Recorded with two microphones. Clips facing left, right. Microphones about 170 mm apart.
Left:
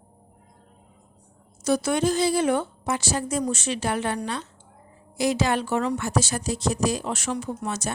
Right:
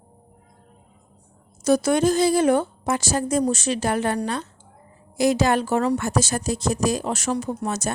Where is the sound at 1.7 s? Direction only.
40° right (ahead or behind).